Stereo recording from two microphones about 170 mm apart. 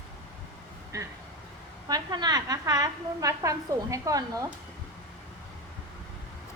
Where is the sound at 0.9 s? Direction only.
20° right (ahead or behind).